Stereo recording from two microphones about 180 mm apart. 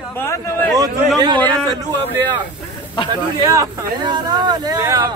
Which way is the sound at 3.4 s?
20° right (ahead or behind).